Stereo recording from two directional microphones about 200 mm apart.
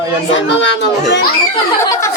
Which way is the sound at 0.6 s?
65° left (ahead or behind).